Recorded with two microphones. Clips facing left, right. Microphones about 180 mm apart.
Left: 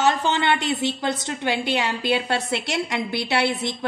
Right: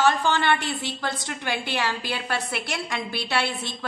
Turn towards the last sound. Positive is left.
turn(degrees=20)  # may be behind; listen again after turning